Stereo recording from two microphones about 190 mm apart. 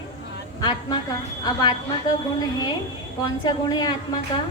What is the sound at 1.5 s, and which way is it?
A woman's voice, 25° left (ahead or behind).